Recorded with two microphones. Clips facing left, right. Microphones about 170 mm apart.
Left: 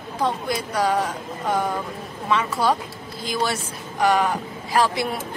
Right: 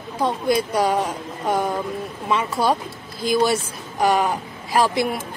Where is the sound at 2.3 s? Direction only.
15° right (ahead or behind).